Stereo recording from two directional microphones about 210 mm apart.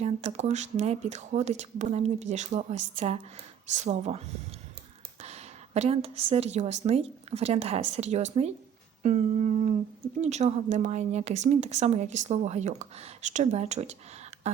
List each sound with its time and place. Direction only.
0.0 s speech: 30° right (ahead or behind)
5.2 s a woman's voice: 30° right (ahead or behind)
14.5 s a sound: 30° right (ahead or behind)